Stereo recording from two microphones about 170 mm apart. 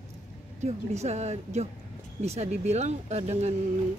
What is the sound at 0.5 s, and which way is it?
Speech, 40° right (ahead or behind).